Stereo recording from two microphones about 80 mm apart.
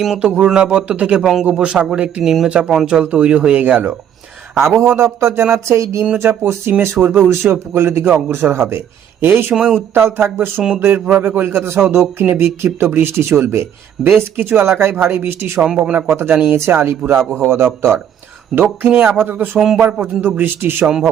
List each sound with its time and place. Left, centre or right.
0.0 s a man's voice: centre
4.7 s speech: right
15.6 s speech: centre
16.0 s speech: right
19.5 s a man's voice: centre
20.0 s speech: right
20.8 s speech: centre